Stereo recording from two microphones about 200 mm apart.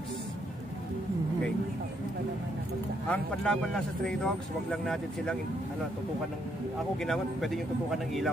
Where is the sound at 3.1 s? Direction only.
5° left (ahead or behind).